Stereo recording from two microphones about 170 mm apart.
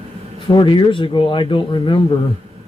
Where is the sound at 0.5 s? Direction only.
30° left (ahead or behind).